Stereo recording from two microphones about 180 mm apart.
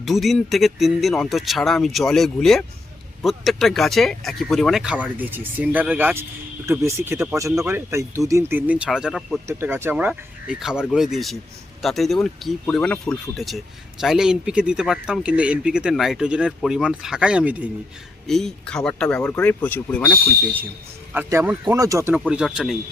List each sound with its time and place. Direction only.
0.0 s speech: centre (ahead or behind)
9.5 s speech: 15° right (ahead or behind); by 20.1 s 10° left (ahead or behind)
21.1 s speech: 15° right (ahead or behind)
22.1 s speech: 5° right (ahead or behind)